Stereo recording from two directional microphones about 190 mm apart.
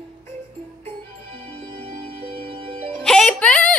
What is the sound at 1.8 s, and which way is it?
Music, 30° right (ahead or behind).